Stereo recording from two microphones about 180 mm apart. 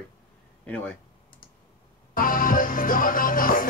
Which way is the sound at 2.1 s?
50° left (ahead or behind).